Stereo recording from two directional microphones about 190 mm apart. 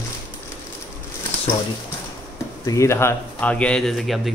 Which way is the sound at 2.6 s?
15° left (ahead or behind).